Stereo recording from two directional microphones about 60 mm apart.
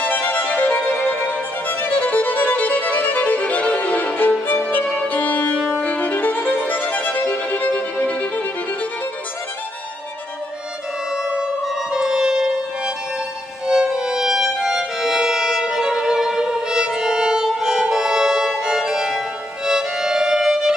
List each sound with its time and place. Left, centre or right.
0.0 s violin: left
4.9 s music: left
5.8 s violin: left
11.1 s music: centre